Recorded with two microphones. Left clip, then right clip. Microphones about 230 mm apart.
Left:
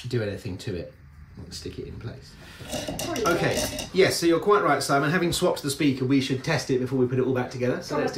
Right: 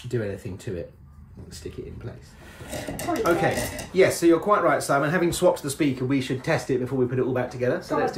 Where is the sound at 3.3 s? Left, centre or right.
Centre.